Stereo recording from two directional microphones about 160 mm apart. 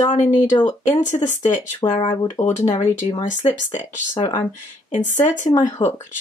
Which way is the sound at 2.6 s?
20° left (ahead or behind).